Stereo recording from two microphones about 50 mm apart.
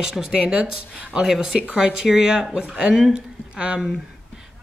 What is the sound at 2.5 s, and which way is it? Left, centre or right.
Speech, right.